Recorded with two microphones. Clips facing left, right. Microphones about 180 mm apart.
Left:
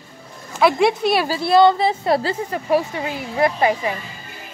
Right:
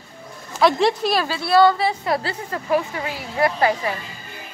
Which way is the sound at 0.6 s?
5° left (ahead or behind).